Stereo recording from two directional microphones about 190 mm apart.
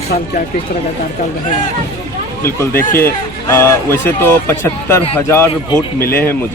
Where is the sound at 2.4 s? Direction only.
10° left (ahead or behind).